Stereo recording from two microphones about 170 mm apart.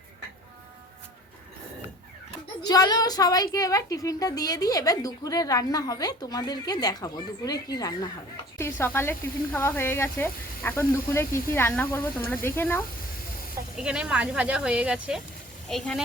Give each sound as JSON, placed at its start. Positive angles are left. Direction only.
{"t": 2.6, "sound": "speech", "side_deg": 20}
{"t": 13.7, "sound": "speech", "side_deg": -5}